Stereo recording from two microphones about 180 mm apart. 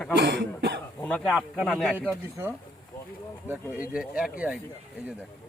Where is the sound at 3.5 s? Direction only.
5° right (ahead or behind).